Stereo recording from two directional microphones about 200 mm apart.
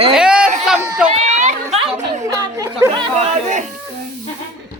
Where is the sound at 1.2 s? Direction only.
35° right (ahead or behind).